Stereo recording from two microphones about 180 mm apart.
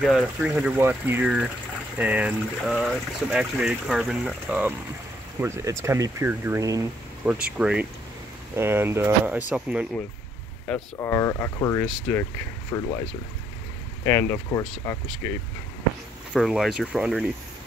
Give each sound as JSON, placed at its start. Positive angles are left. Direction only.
{"t": 0.0, "sound": "speech", "side_deg": -5}
{"t": 7.2, "sound": "speech", "side_deg": -5}
{"t": 10.7, "sound": "speech", "side_deg": 15}
{"t": 14.0, "sound": "speech", "side_deg": 15}
{"t": 16.3, "sound": "speech", "side_deg": 0}